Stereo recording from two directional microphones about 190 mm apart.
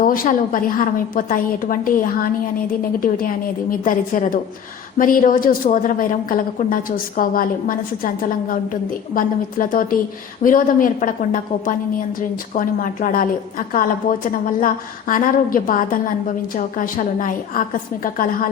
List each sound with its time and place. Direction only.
0.0 s a woman's voice: 45° left (ahead or behind)